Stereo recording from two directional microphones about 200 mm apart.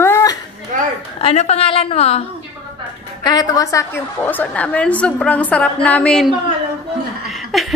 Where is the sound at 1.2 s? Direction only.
35° left (ahead or behind).